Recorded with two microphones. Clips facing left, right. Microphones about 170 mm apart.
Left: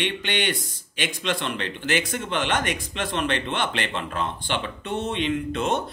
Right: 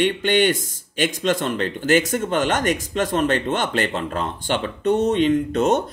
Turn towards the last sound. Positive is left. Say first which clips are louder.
# right 6 dB
turn(degrees=-45)  # may be behind; listen again after turning